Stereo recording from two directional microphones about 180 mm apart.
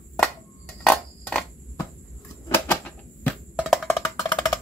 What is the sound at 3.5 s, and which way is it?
Music, centre (ahead or behind).